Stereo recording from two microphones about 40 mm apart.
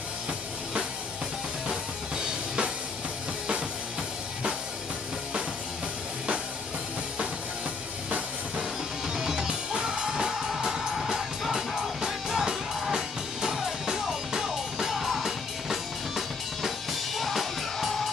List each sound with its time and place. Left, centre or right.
1.7 s music: right
8.5 s music: centre